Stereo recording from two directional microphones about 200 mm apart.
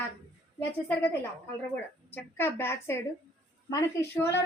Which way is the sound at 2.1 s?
10° left (ahead or behind).